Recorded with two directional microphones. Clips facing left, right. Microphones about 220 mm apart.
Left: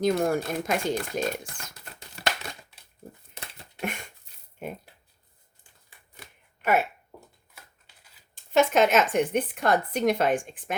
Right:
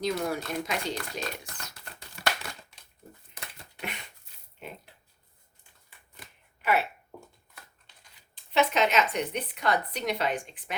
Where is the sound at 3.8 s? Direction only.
50° left (ahead or behind).